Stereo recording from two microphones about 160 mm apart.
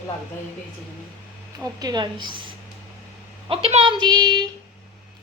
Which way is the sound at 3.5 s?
40° right (ahead or behind).